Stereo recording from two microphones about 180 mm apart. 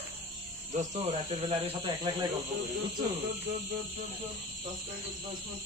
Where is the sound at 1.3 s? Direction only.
30° right (ahead or behind).